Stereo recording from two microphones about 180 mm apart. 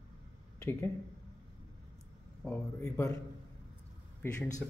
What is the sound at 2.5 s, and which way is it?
Speech, 10° left (ahead or behind).